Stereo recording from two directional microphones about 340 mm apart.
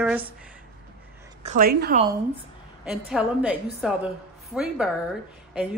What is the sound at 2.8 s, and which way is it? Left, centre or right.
A woman's voice, centre.